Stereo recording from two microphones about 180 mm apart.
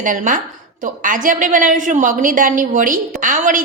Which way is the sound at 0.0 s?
50° right (ahead or behind).